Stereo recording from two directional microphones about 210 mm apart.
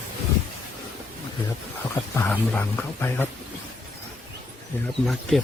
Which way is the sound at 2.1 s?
10° left (ahead or behind).